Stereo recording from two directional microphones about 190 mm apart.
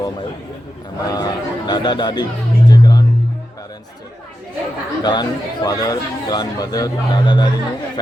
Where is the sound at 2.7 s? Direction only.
20° left (ahead or behind).